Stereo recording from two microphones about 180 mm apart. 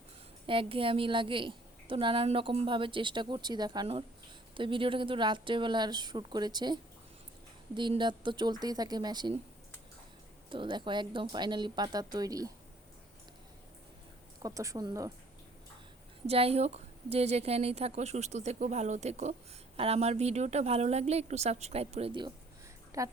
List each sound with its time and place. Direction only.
0.4 s a woman's voice: 30° right (ahead or behind)
10.5 s a woman's voice: 25° right (ahead or behind)
14.3 s a woman's voice: 20° right (ahead or behind)
16.2 s a woman's voice: 35° right (ahead or behind)
22.9 s a woman's voice: 20° right (ahead or behind)